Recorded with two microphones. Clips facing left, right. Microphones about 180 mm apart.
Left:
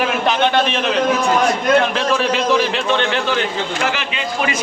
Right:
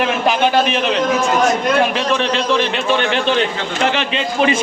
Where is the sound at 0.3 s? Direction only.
5° right (ahead or behind).